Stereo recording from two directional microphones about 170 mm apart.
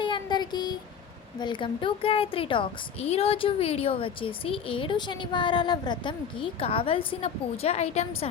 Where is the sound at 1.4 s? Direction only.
30° left (ahead or behind).